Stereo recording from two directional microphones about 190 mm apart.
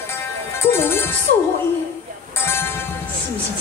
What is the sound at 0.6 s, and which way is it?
Music, 10° left (ahead or behind).